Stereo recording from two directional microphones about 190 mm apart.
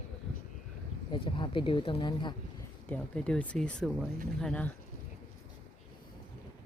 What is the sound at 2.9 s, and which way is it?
Speech, 5° left (ahead or behind).